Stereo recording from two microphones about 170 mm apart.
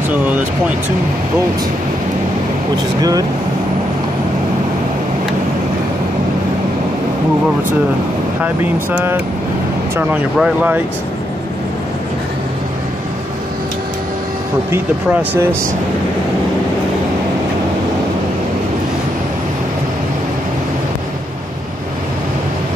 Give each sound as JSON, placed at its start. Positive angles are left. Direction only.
{"t": 3.0, "sound": "speech", "side_deg": -20}
{"t": 8.7, "sound": "speech", "side_deg": -10}
{"t": 10.3, "sound": "speech", "side_deg": -5}
{"t": 14.7, "sound": "speech", "side_deg": -10}